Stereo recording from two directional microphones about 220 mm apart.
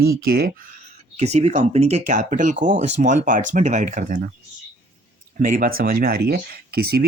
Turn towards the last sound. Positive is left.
turn(degrees=-45)  # may be behind; listen again after turning